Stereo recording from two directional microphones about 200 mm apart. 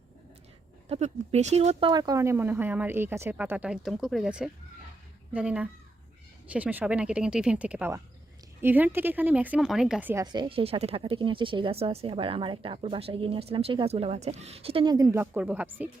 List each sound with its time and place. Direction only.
0.9 s speech: 30° right (ahead or behind)
1.9 s a woman's voice: 20° right (ahead or behind)
10.3 s speech: 25° right (ahead or behind); by 15.9 s 10° right (ahead or behind)